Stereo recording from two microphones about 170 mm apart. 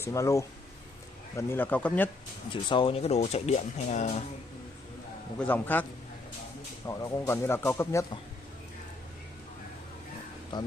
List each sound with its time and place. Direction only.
0.0 s speech: 15° left (ahead or behind)
2.5 s speech: 30° left (ahead or behind)
5.5 s speech: 10° left (ahead or behind)
6.9 s speech: 20° left (ahead or behind)